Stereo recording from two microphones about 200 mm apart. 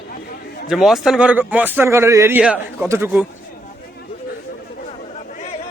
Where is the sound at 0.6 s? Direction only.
Centre (ahead or behind).